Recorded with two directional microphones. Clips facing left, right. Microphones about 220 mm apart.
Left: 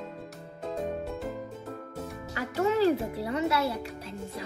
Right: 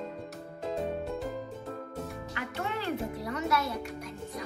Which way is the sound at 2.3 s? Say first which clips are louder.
Left 10 dB; 40° left (ahead or behind).